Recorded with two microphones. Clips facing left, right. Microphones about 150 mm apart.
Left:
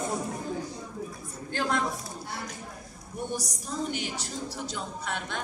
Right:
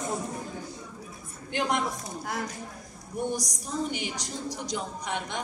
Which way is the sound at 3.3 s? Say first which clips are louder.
Right 1 dB; 10° right (ahead or behind).